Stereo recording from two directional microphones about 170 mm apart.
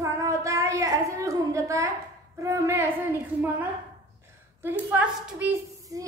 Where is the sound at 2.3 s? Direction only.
15° right (ahead or behind).